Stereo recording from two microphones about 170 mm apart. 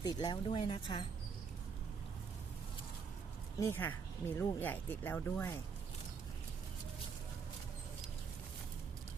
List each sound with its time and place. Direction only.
0.0 s speech: 25° left (ahead or behind)
3.6 s speech: 15° left (ahead or behind)